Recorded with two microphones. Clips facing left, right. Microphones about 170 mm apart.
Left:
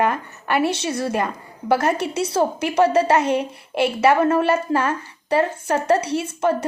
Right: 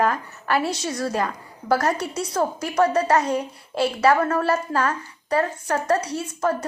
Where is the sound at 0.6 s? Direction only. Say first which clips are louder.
Left 5 dB; 65° left (ahead or behind).